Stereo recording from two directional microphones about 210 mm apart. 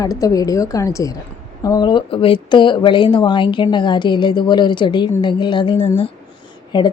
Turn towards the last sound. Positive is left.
turn(degrees=20)  # may be behind; listen again after turning